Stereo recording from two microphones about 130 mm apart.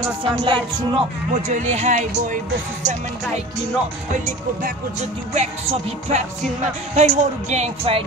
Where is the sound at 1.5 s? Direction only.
65° right (ahead or behind).